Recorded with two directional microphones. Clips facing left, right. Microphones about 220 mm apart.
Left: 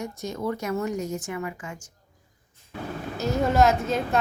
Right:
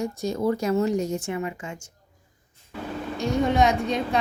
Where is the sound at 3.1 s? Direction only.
5° left (ahead or behind).